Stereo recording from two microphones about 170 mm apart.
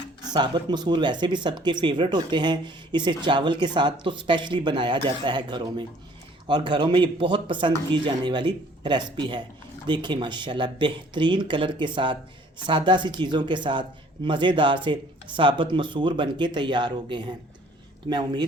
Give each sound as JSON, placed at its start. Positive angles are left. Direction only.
{"t": 0.3, "sound": "speech", "side_deg": -25}